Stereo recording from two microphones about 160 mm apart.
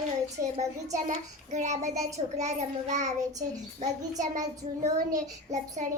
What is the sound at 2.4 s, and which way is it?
Child singing, 45° right (ahead or behind).